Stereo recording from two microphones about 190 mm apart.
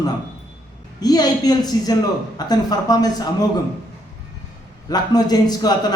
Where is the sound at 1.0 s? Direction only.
20° left (ahead or behind).